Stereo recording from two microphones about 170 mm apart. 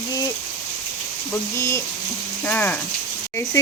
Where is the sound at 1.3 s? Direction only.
15° left (ahead or behind).